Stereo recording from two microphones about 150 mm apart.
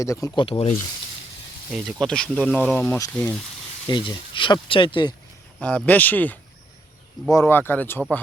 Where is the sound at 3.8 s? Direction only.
30° left (ahead or behind).